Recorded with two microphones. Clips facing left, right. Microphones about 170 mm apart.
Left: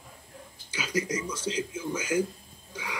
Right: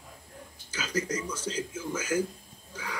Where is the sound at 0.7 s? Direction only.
10° left (ahead or behind).